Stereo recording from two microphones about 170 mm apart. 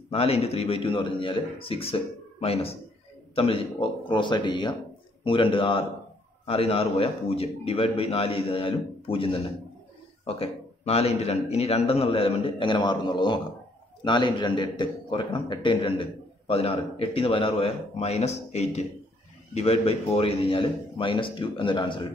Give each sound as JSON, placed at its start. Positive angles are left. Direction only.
{"t": 0.1, "sound": "a man's voice", "side_deg": 35}
{"t": 4.1, "sound": "a man's voice", "side_deg": 25}